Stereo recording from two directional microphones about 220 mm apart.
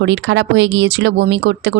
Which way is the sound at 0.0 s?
55° right (ahead or behind).